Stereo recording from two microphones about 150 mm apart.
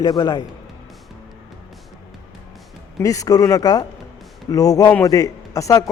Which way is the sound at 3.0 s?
20° left (ahead or behind).